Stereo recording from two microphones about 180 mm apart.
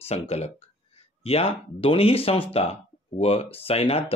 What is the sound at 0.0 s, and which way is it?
Speech, 35° left (ahead or behind).